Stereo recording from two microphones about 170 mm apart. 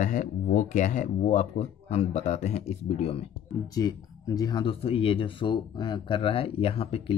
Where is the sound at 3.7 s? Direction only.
20° left (ahead or behind).